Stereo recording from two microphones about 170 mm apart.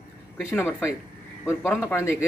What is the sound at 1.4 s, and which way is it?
Speech, 15° left (ahead or behind).